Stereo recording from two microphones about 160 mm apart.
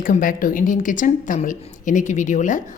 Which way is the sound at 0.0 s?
60° left (ahead or behind).